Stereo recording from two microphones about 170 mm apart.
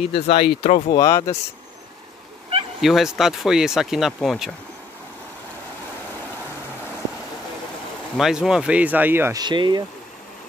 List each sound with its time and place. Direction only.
0.0 s speech: 35° left (ahead or behind)
0.9 s speech: 20° left (ahead or behind)
2.8 s speech: centre (ahead or behind)
8.2 s speech: 5° right (ahead or behind)
9.4 s speech: 25° right (ahead or behind)